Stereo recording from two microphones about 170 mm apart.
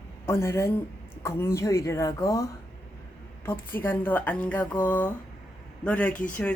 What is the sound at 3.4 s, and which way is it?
A woman's voice, 10° left (ahead or behind).